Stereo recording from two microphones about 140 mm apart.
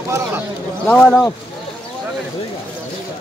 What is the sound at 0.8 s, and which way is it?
Speech, 10° left (ahead or behind).